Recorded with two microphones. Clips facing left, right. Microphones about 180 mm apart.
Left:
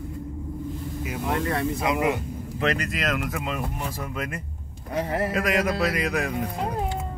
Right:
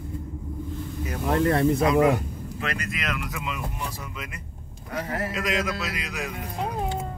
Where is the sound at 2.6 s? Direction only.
40° left (ahead or behind).